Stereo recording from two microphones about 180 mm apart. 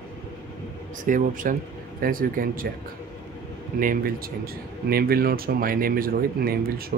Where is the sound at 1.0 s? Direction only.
50° right (ahead or behind).